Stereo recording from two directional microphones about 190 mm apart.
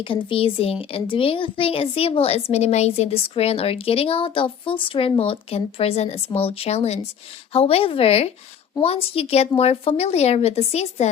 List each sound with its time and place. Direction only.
0.3 s speech: 30° left (ahead or behind)